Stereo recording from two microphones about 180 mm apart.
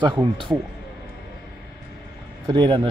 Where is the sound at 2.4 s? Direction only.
25° right (ahead or behind).